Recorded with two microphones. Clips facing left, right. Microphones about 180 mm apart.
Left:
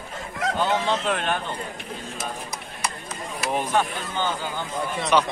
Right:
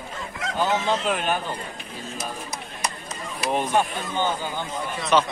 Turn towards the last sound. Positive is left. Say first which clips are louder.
# even
turn(degrees=15)  # may be behind; listen again after turning